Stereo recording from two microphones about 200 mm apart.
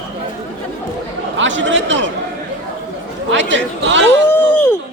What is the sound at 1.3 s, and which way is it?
Speech, 70° right (ahead or behind).